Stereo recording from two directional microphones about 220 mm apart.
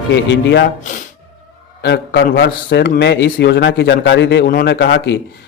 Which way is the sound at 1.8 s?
50° left (ahead or behind).